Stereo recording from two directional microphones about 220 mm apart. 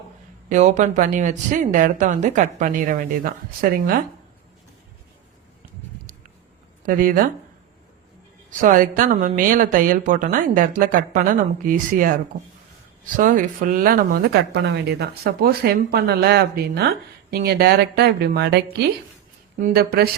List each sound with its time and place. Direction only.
0.4 s a woman's voice: 35° right (ahead or behind)
6.8 s a woman's voice: 40° right (ahead or behind)
8.4 s a woman's voice: 35° right (ahead or behind)
13.1 s speech: 35° right (ahead or behind)